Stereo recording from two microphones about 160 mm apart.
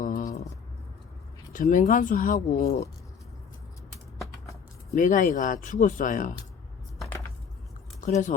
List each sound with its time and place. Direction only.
0.0 s a sound: 55° left (ahead or behind)
1.5 s speech: 55° left (ahead or behind)
4.9 s speech: 55° left (ahead or behind)
8.0 s speech: 50° left (ahead or behind)